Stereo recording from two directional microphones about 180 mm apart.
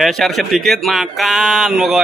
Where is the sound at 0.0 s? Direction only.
Centre (ahead or behind).